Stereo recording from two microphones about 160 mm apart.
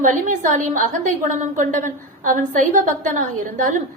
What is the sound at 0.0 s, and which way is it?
A woman's voice, 50° right (ahead or behind).